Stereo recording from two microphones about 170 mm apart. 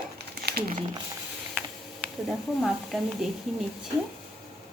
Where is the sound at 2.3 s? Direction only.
Centre (ahead or behind).